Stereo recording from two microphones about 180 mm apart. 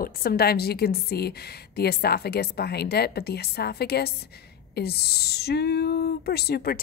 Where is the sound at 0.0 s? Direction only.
55° left (ahead or behind).